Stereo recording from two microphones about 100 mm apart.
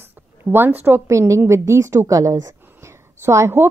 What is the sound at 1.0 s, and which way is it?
A woman's voice, 30° right (ahead or behind).